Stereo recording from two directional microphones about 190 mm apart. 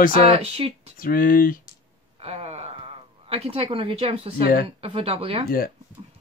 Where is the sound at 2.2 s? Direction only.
30° right (ahead or behind).